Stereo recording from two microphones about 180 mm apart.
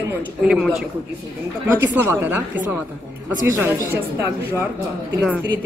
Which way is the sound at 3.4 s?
15° right (ahead or behind).